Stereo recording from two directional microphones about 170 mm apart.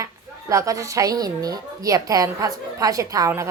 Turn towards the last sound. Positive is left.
turn(degrees=-20)  # may be behind; listen again after turning